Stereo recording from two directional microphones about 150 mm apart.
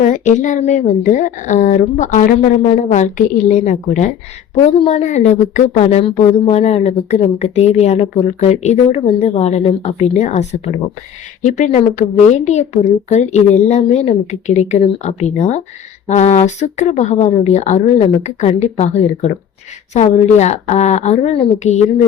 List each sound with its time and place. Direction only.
0.0 s a woman's voice: 55° left (ahead or behind)